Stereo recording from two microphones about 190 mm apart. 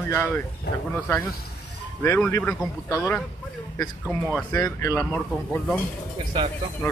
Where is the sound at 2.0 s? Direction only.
15° left (ahead or behind).